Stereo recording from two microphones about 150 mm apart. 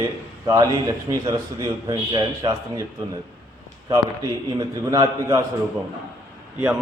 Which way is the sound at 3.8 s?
25° right (ahead or behind).